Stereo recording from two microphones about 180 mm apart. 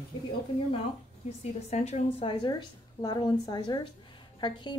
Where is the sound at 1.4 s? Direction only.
35° left (ahead or behind).